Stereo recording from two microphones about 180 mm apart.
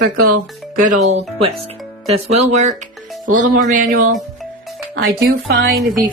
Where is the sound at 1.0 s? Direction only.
35° right (ahead or behind).